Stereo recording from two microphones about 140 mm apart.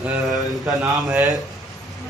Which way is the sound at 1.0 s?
20° right (ahead or behind).